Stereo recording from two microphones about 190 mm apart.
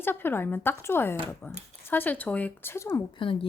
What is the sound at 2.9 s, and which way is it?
Speech, 25° left (ahead or behind).